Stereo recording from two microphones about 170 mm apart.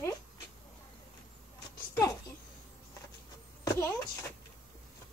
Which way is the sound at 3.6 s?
15° left (ahead or behind).